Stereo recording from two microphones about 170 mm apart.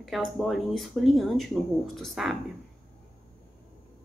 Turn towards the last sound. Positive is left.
turn(degrees=0)  # may be behind; listen again after turning